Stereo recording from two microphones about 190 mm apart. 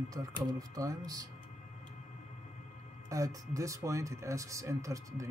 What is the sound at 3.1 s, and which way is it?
Speech, 15° right (ahead or behind).